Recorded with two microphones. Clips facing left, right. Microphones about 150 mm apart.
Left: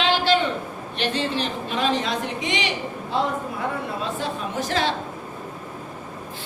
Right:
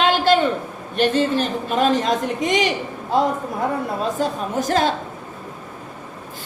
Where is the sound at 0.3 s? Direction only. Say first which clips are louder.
Right 5 dB; 45° right (ahead or behind).